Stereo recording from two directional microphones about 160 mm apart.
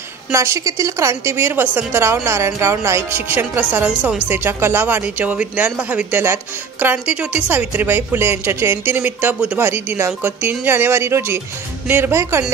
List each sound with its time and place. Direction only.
0.3 s speech: 20° right (ahead or behind)